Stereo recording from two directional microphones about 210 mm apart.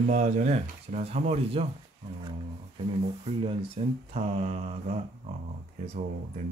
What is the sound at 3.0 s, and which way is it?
Speech, 25° right (ahead or behind).